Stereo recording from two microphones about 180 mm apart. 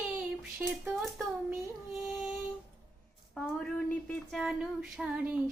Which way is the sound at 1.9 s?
Centre (ahead or behind).